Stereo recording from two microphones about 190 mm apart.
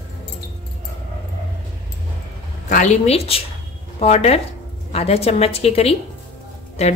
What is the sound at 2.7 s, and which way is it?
Speech, 40° left (ahead or behind).